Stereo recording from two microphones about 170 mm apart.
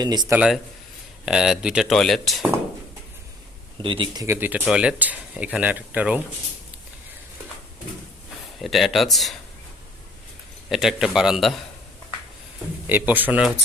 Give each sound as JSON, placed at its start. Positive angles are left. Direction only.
{"t": 0.0, "sound": "speech", "side_deg": -25}
{"t": 0.3, "sound": "speech", "side_deg": -5}
{"t": 3.8, "sound": "speech", "side_deg": -30}
{"t": 8.6, "sound": "speech", "side_deg": 0}
{"t": 10.7, "sound": "speech", "side_deg": 0}
{"t": 12.9, "sound": "speech", "side_deg": -10}